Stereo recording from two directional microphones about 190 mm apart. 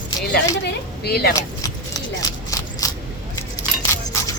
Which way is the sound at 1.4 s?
20° left (ahead or behind).